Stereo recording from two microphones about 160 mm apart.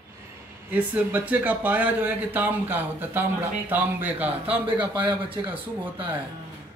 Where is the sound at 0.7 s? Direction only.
10° right (ahead or behind).